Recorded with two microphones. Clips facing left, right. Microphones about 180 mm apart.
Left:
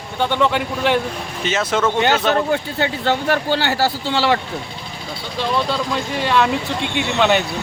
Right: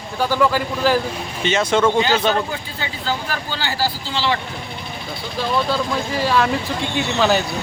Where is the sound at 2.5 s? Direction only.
65° left (ahead or behind).